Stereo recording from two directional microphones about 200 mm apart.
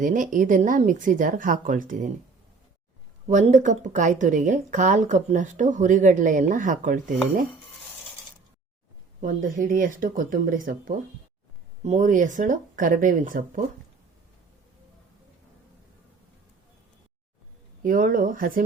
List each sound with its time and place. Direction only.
0.0 s speech: 40° right (ahead or behind)
3.2 s speech: 35° right (ahead or behind)
9.2 s speech: 40° right (ahead or behind)
17.8 s speech: 40° right (ahead or behind)